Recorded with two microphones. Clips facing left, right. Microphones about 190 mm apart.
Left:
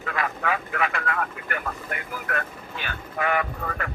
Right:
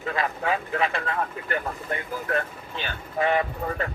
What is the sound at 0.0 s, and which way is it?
Speech, 30° right (ahead or behind).